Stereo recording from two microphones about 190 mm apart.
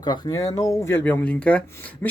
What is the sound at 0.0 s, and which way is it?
Speech, 20° left (ahead or behind).